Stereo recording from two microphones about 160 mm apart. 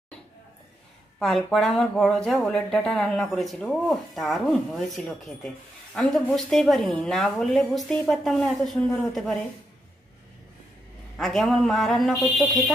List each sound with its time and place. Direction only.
1.2 s speech: centre (ahead or behind)
11.1 s speech: centre (ahead or behind)